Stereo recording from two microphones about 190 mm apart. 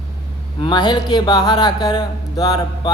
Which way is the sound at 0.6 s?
25° left (ahead or behind).